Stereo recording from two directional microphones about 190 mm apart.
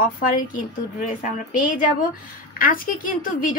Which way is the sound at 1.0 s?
45° left (ahead or behind).